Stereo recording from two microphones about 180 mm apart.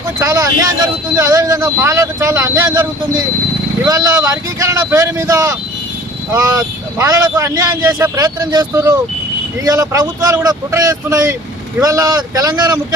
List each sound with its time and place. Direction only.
0.2 s speech: 15° right (ahead or behind)
3.8 s speech: 20° right (ahead or behind)